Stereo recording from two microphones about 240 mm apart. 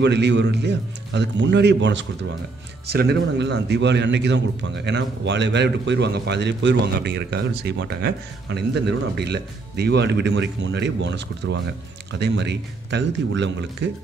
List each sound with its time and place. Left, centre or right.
0.0 s a man's voice: right